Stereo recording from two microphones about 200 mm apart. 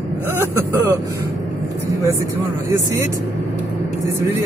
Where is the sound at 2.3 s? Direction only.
15° right (ahead or behind).